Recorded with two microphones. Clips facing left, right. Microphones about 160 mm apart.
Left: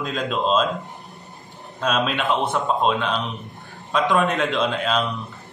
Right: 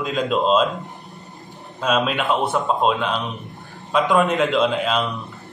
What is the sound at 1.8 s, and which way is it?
A man's voice, 5° right (ahead or behind).